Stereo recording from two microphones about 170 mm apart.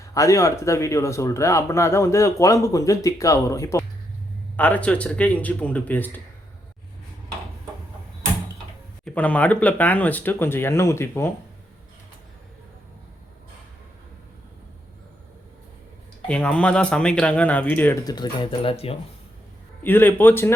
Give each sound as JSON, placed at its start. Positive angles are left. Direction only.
{"t": 0.0, "sound": "speech", "side_deg": 20}
{"t": 9.0, "sound": "speech", "side_deg": 10}
{"t": 16.2, "sound": "speech", "side_deg": 5}
{"t": 18.0, "sound": "speech", "side_deg": 25}
{"t": 19.8, "sound": "speech", "side_deg": 10}